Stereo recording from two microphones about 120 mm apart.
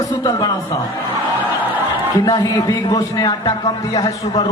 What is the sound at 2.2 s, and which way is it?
A man's voice, 30° left (ahead or behind).